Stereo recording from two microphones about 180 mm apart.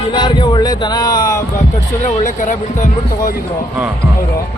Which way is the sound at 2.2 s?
45° left (ahead or behind).